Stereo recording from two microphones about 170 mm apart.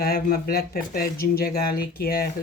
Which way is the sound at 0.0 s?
60° left (ahead or behind).